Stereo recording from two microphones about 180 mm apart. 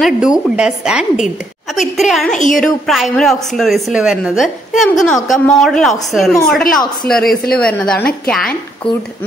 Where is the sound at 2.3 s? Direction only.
45° left (ahead or behind).